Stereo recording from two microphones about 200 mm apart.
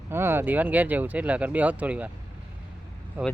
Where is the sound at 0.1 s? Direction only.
10° right (ahead or behind).